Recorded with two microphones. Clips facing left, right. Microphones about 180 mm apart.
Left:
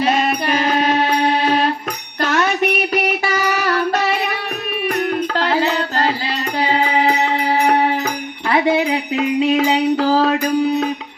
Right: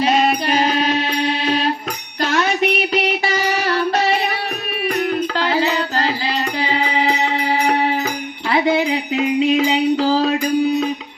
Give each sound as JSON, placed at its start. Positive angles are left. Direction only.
{"t": 0.0, "sound": "music", "side_deg": 50}